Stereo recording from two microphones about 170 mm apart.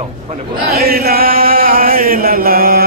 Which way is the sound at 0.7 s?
65° right (ahead or behind).